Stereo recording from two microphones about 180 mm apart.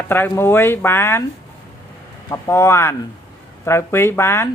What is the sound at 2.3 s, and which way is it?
Speech, 15° left (ahead or behind).